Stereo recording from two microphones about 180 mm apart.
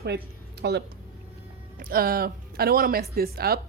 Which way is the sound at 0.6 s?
65° right (ahead or behind).